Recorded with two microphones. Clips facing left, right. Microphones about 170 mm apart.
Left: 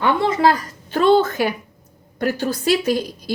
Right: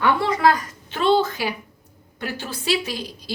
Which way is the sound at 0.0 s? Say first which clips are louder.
Left 2 dB; 25° left (ahead or behind).